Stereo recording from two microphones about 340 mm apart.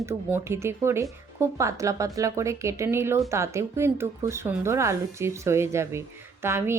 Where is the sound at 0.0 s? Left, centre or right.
Centre.